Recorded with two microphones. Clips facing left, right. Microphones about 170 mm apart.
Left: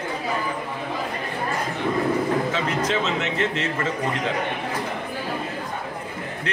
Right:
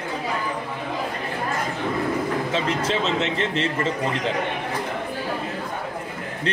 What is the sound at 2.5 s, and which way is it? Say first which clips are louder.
A man's voice: even; 30° right (ahead or behind).